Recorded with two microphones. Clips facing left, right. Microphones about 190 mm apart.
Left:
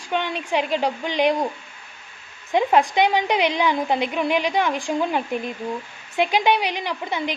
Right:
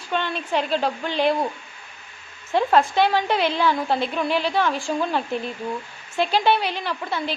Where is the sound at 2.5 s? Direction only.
15° left (ahead or behind).